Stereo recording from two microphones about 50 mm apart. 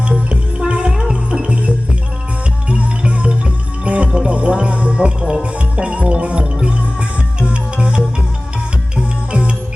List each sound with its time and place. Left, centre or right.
0.0 s music: right